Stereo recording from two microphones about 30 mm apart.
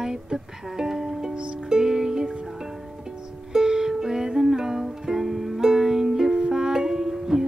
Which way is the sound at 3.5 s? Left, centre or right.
Centre.